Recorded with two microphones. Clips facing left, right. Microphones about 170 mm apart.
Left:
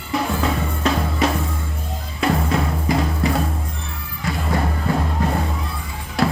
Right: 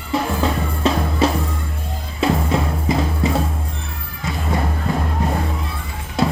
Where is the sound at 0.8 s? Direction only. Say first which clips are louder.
Right 3 dB; 30° right (ahead or behind).